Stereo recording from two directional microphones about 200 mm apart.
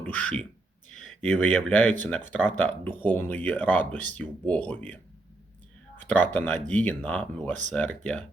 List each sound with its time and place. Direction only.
0.1 s speech: 5° left (ahead or behind)
6.3 s speech: 5° left (ahead or behind)